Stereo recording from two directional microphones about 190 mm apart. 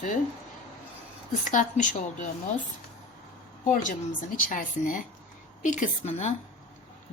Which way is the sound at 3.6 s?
45° left (ahead or behind).